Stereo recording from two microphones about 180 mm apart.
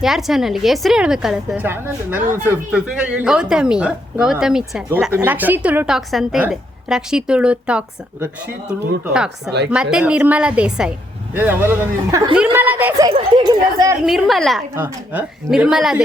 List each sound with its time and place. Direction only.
0.0 s a woman's voice: centre (ahead or behind)
9.6 s a woman's voice: 5° right (ahead or behind)
13.1 s speech: 25° right (ahead or behind)
14.0 s speech: centre (ahead or behind)